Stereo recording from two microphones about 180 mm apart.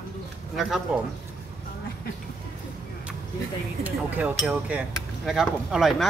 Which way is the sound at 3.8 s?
10° right (ahead or behind).